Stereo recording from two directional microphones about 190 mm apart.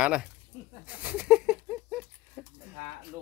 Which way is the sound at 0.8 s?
5° right (ahead or behind).